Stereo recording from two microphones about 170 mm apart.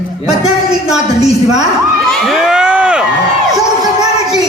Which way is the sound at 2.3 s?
5° right (ahead or behind).